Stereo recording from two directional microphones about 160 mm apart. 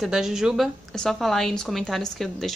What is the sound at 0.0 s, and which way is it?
A woman's voice, 5° right (ahead or behind).